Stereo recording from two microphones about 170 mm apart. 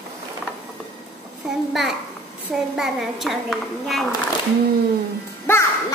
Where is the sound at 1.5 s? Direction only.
Centre (ahead or behind).